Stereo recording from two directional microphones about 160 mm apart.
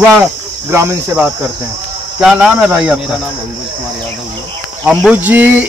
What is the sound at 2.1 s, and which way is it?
Speech, 5° right (ahead or behind).